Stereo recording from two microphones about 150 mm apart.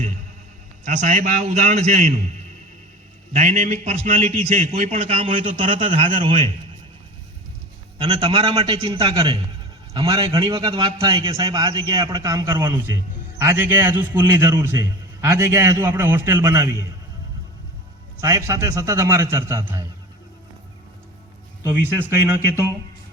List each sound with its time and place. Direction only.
0.9 s a man's voice: 55° right (ahead or behind)
3.3 s a man's voice: 45° right (ahead or behind)
7.9 s a man's voice: 35° right (ahead or behind)
18.2 s a man's voice: 20° right (ahead or behind)